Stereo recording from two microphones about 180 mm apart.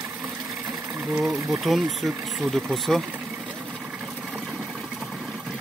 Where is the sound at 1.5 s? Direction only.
Centre (ahead or behind).